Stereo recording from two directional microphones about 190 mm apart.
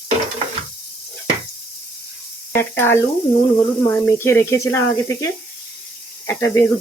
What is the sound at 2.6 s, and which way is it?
Speech, 10° left (ahead or behind).